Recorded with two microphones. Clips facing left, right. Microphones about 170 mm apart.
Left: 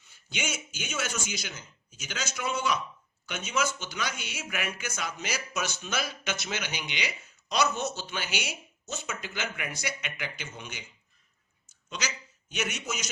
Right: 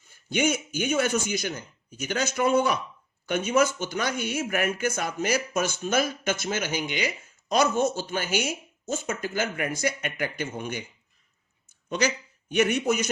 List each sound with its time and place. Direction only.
0.1 s speech: 50° right (ahead or behind)
11.9 s a man's voice: 55° right (ahead or behind)